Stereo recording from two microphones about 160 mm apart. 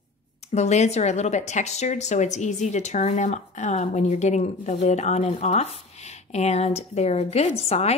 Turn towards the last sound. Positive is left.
turn(degrees=40)  # may be behind; listen again after turning